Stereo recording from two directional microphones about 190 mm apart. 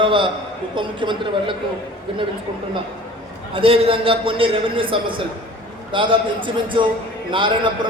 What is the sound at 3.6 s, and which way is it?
A man's voice, 30° right (ahead or behind).